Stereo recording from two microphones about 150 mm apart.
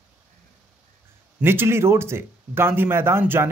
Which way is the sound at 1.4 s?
15° right (ahead or behind).